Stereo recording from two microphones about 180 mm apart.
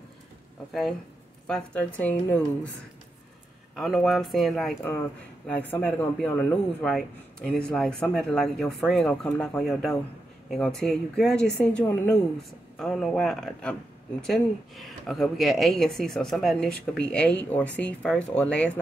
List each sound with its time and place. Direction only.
1.5 s speech: 5° left (ahead or behind)
3.7 s speech: centre (ahead or behind)